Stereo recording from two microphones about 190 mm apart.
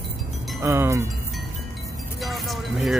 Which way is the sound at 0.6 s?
15° right (ahead or behind).